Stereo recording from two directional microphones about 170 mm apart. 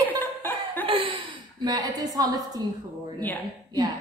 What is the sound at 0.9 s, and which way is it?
Chuckle, 30° right (ahead or behind).